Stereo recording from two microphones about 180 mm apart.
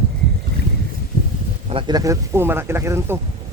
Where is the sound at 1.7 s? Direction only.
20° right (ahead or behind).